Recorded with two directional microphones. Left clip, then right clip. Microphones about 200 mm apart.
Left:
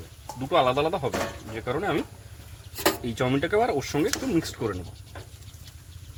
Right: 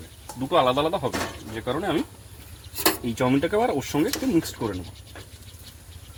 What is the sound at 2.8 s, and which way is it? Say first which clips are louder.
Speech: right 2 dB; 10° right (ahead or behind).